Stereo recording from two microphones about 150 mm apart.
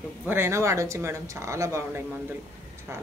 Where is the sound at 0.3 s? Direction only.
15° right (ahead or behind).